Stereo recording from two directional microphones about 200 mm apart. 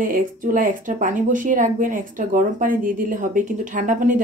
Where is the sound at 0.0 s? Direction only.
45° right (ahead or behind).